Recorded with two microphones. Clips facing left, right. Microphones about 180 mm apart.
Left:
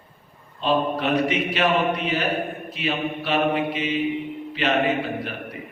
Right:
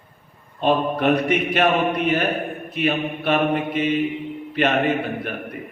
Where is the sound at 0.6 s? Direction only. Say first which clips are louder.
Right 3 dB; 55° right (ahead or behind).